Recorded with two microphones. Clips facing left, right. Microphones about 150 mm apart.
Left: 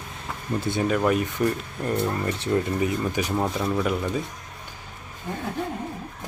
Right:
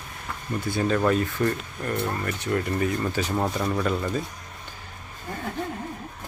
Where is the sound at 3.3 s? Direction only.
5° left (ahead or behind).